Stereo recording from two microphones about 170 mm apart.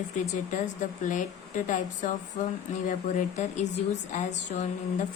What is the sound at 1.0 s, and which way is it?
A woman's voice, 50° left (ahead or behind).